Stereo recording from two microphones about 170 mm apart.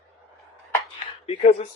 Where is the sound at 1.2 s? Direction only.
35° left (ahead or behind).